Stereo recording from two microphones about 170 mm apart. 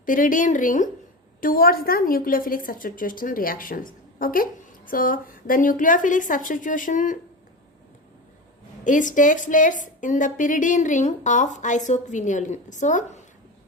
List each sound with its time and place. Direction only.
0.0 s a woman's voice: 50° left (ahead or behind)
8.8 s a woman's voice: 50° left (ahead or behind)